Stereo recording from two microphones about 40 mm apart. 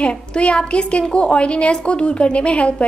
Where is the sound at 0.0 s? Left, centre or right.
Left.